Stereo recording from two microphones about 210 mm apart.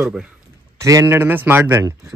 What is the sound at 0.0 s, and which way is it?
Speech, centre (ahead or behind).